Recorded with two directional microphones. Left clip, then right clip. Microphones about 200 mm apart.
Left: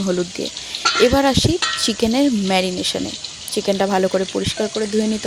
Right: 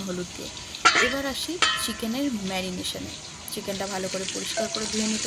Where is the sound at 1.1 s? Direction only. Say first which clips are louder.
Left 11 dB; 45° left (ahead or behind).